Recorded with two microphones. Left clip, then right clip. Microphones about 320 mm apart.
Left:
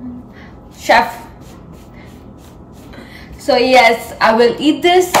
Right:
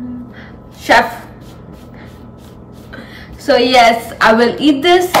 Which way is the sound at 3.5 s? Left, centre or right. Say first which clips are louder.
Right 1 dB; centre.